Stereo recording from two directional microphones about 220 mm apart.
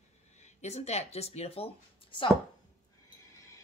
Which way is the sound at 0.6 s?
30° left (ahead or behind).